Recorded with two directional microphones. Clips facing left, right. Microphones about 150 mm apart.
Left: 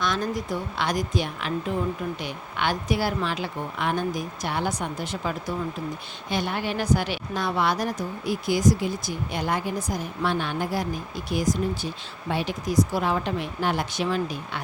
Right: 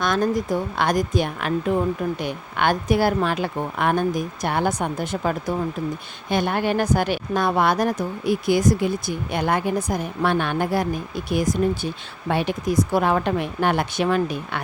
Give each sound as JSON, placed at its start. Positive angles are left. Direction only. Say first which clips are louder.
{"t": 0.0, "sound": "a woman's voice", "louder": "right 6 dB", "side_deg": -50}